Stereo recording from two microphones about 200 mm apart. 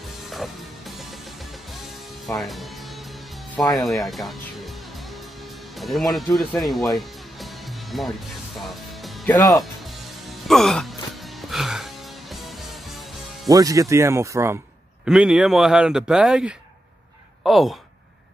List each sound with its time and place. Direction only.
0.3 s music: centre (ahead or behind)
2.4 s speech: centre (ahead or behind)
3.8 s music: centre (ahead or behind)
5.8 s a man's voice: centre (ahead or behind)
7.0 s music: centre (ahead or behind)
9.3 s speech: 15° left (ahead or behind)
10.5 s music: centre (ahead or behind)
13.5 s a man's voice: 15° right (ahead or behind); by 17.7 s centre (ahead or behind)